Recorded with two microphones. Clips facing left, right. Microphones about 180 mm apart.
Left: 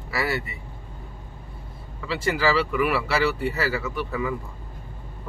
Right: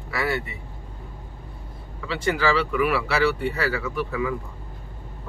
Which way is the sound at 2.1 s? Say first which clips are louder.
Even; 5° left (ahead or behind).